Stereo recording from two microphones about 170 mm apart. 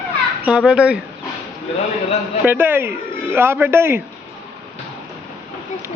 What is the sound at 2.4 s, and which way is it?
A man's voice, 10° right (ahead or behind).